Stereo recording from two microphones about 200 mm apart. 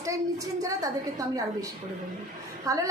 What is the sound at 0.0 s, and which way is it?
Speech, 15° right (ahead or behind).